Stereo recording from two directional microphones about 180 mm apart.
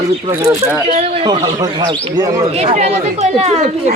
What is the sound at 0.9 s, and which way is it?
A man's voice, 35° right (ahead or behind).